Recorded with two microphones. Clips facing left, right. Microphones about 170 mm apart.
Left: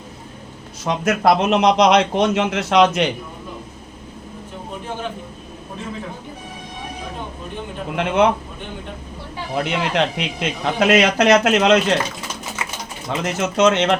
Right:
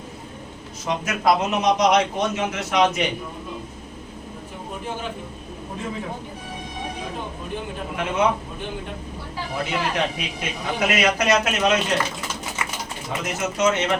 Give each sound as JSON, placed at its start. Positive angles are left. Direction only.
{"t": 0.9, "sound": "a man's voice", "side_deg": 70}
{"t": 7.9, "sound": "a man's voice", "side_deg": 70}
{"t": 9.6, "sound": "a man's voice", "side_deg": 75}
{"t": 13.1, "sound": "a man's voice", "side_deg": 75}